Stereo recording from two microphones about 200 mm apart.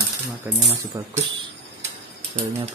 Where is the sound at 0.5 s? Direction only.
10° right (ahead or behind).